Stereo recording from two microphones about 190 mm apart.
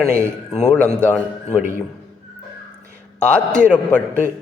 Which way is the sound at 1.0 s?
5° left (ahead or behind).